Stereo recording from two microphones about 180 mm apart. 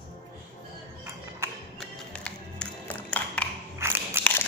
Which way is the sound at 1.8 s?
5° left (ahead or behind).